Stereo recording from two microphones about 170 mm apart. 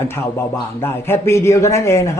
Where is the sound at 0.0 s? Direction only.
15° left (ahead or behind).